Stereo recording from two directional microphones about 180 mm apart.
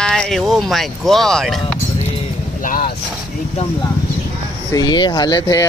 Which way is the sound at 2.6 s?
50° left (ahead or behind).